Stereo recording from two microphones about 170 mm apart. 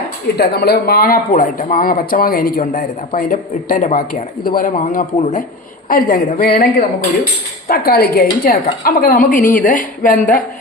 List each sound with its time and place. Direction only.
0.3 s speech: 70° left (ahead or behind)